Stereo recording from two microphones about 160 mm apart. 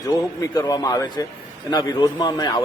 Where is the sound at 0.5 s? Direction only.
25° left (ahead or behind).